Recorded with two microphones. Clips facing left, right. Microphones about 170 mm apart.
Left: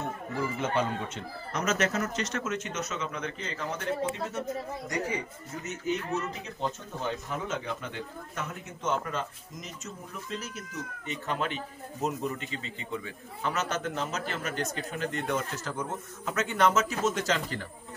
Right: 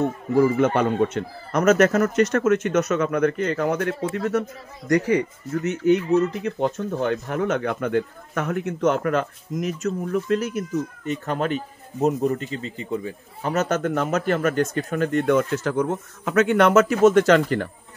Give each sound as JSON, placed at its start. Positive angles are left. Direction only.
{"t": 0.3, "sound": "speech", "side_deg": -60}
{"t": 11.1, "sound": "speech", "side_deg": -45}